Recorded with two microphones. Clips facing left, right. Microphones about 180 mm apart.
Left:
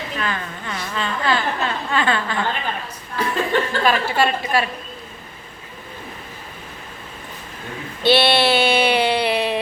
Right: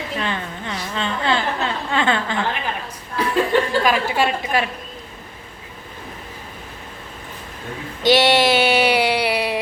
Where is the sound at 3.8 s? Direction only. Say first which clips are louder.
Even; 10° right (ahead or behind).